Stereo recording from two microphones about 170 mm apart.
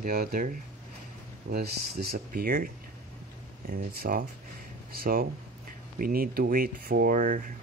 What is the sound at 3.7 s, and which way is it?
Speech, 60° right (ahead or behind).